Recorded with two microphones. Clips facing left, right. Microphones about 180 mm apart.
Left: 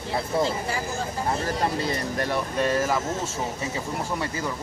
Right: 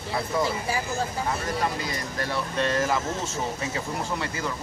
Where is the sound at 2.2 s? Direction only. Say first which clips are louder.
Left 1 dB; 15° left (ahead or behind).